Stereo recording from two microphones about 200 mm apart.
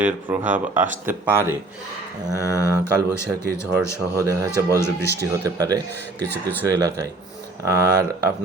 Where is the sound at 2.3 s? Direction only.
15° left (ahead or behind).